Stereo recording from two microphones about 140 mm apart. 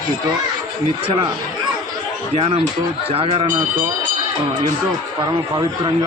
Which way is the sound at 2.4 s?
45° right (ahead or behind).